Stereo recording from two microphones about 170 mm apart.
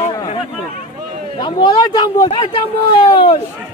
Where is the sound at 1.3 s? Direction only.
25° left (ahead or behind).